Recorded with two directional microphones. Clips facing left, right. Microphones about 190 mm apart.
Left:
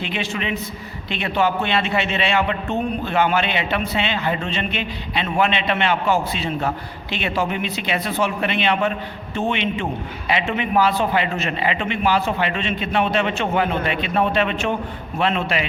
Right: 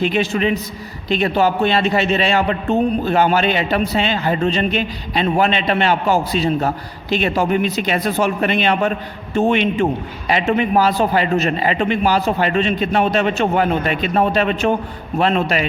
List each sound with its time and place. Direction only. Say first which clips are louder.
0.0 s a man's voice: right 8 dB; 40° right (ahead or behind)